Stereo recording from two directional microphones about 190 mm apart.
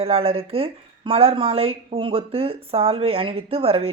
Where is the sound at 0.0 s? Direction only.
30° right (ahead or behind).